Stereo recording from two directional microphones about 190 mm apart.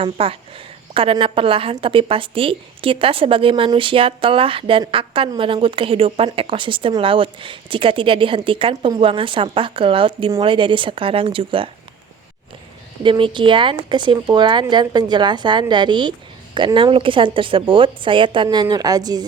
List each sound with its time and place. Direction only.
0.0 s a woman's voice: 30° right (ahead or behind)
13.0 s a woman's voice: 25° right (ahead or behind)